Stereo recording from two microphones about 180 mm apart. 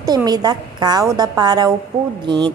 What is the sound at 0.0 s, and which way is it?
A woman's voice, 20° right (ahead or behind).